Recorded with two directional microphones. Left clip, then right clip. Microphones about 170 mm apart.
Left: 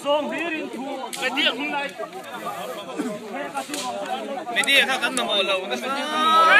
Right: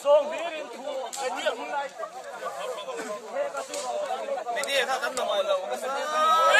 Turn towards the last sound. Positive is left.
turn(degrees=-30)  # may be behind; listen again after turning